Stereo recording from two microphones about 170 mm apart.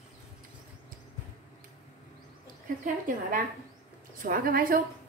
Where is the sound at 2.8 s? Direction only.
50° right (ahead or behind).